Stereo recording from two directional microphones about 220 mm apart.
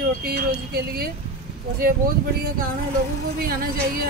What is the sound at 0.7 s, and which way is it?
Speech, 45° right (ahead or behind).